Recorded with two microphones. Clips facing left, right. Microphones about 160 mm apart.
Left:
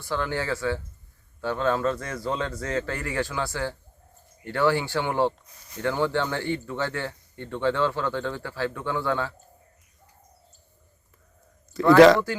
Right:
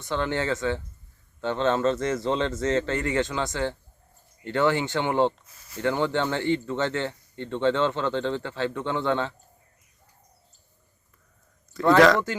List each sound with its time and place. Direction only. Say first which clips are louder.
0.0 s speech: right 2 dB; 20° right (ahead or behind)